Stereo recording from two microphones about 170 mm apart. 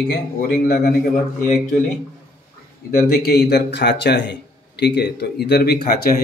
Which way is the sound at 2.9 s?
65° left (ahead or behind).